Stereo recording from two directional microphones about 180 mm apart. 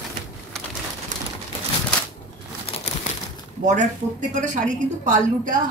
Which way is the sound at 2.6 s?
35° left (ahead or behind).